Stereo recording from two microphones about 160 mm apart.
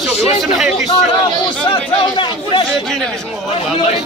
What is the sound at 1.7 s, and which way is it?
Speech, 30° left (ahead or behind).